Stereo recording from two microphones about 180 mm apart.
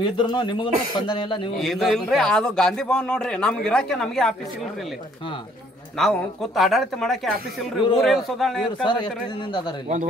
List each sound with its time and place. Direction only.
0.0 s speech: 25° left (ahead or behind)
1.6 s a man's voice: centre (ahead or behind)
5.9 s a man's voice: centre (ahead or behind)
8.8 s speech: 25° left (ahead or behind)